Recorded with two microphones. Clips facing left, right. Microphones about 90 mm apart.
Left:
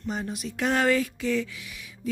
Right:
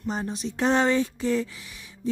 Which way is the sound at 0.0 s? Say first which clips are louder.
Right 2 dB; 30° right (ahead or behind).